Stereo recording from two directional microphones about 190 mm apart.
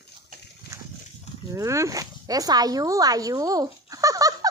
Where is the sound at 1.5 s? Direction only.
15° right (ahead or behind).